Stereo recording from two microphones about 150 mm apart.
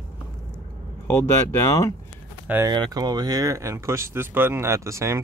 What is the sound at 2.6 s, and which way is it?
Speech, 30° right (ahead or behind).